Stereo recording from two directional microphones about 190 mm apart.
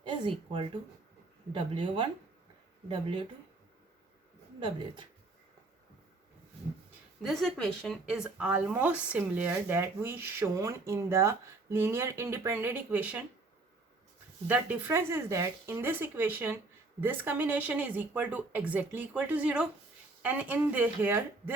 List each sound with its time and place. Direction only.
0.0 s speech: 25° right (ahead or behind)
7.2 s speech: centre (ahead or behind)
14.4 s speech: 10° right (ahead or behind)